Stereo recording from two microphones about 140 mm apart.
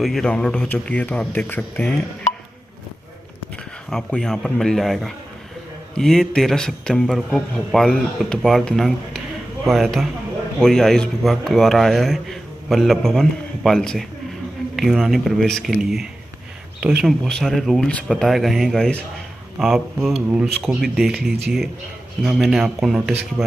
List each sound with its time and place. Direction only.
0.0 s speech: 5° left (ahead or behind)
3.9 s speech: 5° left (ahead or behind)
7.2 s speech: 5° right (ahead or behind)
7.5 s speech: 5° left (ahead or behind)